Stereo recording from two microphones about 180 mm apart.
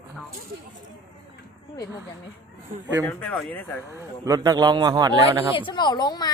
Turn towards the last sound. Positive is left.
turn(degrees=20)  # may be behind; listen again after turning